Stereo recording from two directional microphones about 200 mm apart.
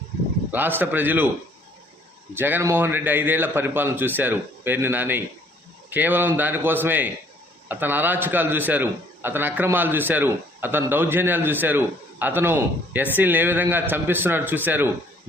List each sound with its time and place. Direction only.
0.5 s a man's voice: 10° right (ahead or behind)
2.3 s a man's voice: 10° right (ahead or behind)